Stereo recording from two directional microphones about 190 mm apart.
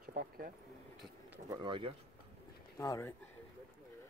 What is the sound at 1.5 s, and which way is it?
Speech, 25° right (ahead or behind).